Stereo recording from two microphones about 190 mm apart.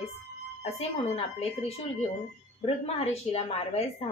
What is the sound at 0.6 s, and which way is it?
Speech, 35° left (ahead or behind).